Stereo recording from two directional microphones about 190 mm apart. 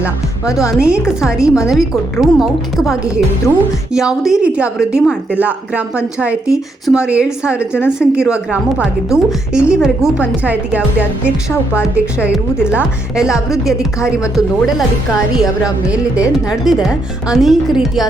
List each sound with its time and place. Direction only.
0.0 s speech: 15° left (ahead or behind)
0.7 s a woman's voice: 5° right (ahead or behind)
11.9 s speech: 5° right (ahead or behind)